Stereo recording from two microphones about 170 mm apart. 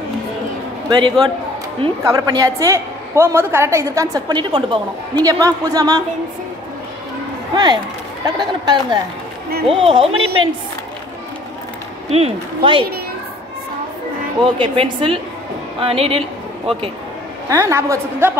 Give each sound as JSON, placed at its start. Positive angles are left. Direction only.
{"t": 0.8, "sound": "a man's voice", "side_deg": -25}
{"t": 7.5, "sound": "a woman's voice", "side_deg": -25}
{"t": 12.1, "sound": "a woman's voice", "side_deg": -35}
{"t": 14.4, "sound": "a woman's voice", "side_deg": -30}
{"t": 17.5, "sound": "a woman's voice", "side_deg": -15}